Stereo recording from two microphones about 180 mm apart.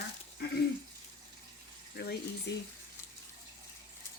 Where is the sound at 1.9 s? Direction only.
65° left (ahead or behind).